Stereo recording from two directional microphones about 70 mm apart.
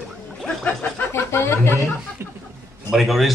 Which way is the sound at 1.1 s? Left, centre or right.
Left.